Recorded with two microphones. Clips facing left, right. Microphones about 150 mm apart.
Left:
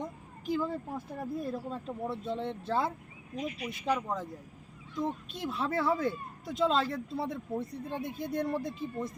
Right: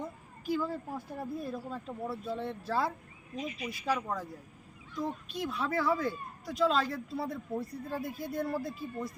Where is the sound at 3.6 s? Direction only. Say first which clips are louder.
Left 1 dB; centre (ahead or behind).